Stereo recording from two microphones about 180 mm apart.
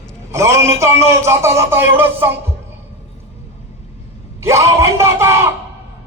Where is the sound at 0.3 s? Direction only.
15° right (ahead or behind).